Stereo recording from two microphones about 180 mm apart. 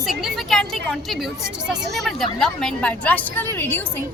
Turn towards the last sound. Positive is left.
turn(degrees=10)  # may be behind; listen again after turning